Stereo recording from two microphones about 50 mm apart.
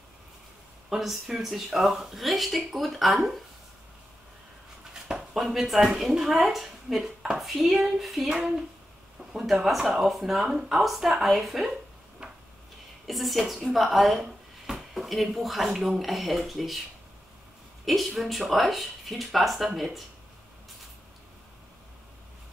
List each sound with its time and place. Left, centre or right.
0.8 s speech: centre
4.9 s speech: centre
12.2 s a sound: centre
13.0 s speech: centre
17.8 s speech: centre